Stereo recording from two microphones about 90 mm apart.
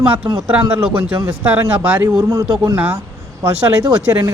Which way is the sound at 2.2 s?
40° right (ahead or behind).